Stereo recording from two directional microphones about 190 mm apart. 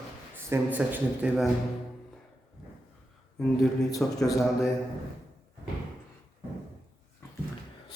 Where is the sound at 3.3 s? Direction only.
5° left (ahead or behind).